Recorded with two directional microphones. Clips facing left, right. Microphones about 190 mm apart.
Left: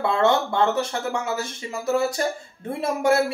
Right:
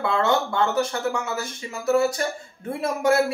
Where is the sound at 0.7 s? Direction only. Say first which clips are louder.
Right 1 dB; 30° left (ahead or behind).